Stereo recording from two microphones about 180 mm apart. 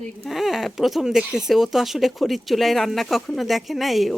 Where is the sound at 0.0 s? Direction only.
Centre (ahead or behind).